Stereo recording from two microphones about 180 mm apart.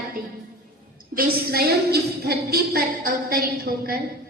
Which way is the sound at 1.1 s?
55° right (ahead or behind).